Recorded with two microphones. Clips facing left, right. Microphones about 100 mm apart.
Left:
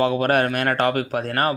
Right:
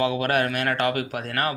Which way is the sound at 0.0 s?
40° left (ahead or behind).